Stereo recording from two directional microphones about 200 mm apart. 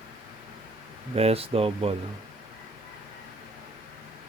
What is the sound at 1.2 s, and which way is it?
Speech, 30° right (ahead or behind).